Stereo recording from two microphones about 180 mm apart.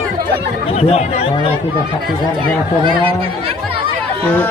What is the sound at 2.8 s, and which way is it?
Speech, 30° right (ahead or behind).